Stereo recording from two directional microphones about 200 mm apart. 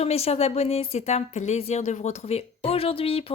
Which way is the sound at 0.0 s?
30° left (ahead or behind).